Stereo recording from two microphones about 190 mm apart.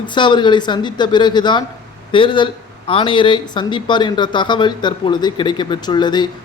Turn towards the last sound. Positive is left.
turn(degrees=20)  # may be behind; listen again after turning